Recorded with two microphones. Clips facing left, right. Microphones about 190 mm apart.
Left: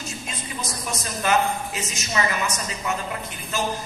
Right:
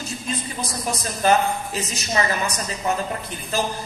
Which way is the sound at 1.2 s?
35° right (ahead or behind).